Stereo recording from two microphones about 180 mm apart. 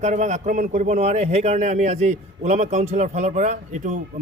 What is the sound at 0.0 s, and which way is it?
A man's voice, 40° right (ahead or behind).